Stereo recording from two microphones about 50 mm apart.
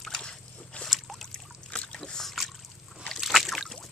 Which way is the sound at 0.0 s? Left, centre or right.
Centre.